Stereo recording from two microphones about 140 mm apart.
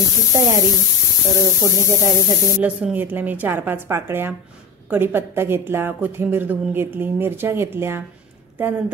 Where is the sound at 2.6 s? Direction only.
10° right (ahead or behind).